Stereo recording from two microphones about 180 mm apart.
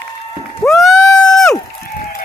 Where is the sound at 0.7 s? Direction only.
Centre (ahead or behind).